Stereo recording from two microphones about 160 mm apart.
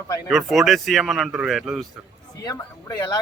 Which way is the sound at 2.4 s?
20° left (ahead or behind).